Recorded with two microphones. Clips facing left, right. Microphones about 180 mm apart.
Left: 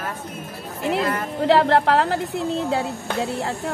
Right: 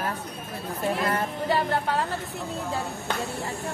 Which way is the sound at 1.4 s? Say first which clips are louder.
Left 10 dB; 80° left.